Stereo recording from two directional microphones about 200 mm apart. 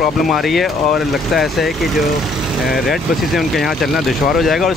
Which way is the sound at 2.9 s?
Centre (ahead or behind).